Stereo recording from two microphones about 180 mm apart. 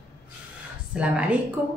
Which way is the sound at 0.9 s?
5° right (ahead or behind).